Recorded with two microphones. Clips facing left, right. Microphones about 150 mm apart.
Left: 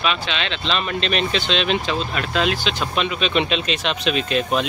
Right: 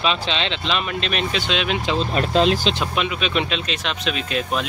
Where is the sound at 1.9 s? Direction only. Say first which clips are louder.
Right 4 dB; 35° right (ahead or behind).